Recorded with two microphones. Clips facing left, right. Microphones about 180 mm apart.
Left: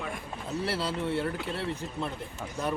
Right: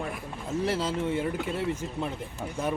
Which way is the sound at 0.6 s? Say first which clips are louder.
Right 3 dB; 15° right (ahead or behind).